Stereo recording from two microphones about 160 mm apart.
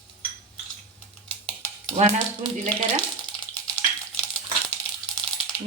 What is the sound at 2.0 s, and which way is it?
Speech, 45° right (ahead or behind).